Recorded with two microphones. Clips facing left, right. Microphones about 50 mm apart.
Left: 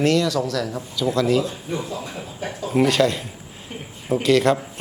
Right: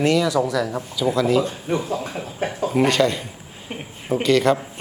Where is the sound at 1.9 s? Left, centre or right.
Right.